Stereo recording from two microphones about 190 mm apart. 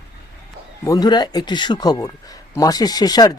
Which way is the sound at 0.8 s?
20° left (ahead or behind).